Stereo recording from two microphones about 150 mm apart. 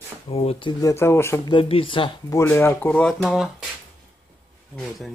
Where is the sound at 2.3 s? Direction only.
15° left (ahead or behind); by 3.5 s centre (ahead or behind).